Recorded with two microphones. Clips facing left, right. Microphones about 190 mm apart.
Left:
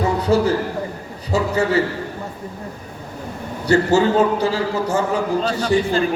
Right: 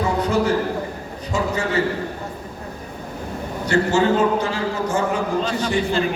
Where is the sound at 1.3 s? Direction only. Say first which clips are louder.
Left 3 dB; 35° left (ahead or behind).